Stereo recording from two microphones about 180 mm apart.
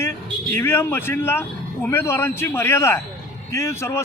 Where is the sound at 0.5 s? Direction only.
15° left (ahead or behind).